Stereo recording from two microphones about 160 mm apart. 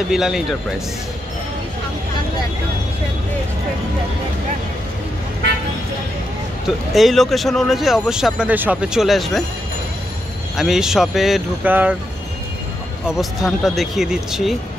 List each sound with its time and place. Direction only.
0.1 s speech: 5° right (ahead or behind)
6.9 s speech: centre (ahead or behind)
10.5 s speech: centre (ahead or behind)
13.0 s speech: centre (ahead or behind)